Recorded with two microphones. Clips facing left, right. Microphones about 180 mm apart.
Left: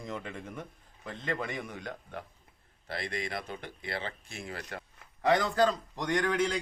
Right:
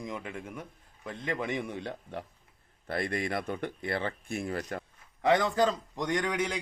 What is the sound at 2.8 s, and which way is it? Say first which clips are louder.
Speech: right 5 dB; 50° right (ahead or behind).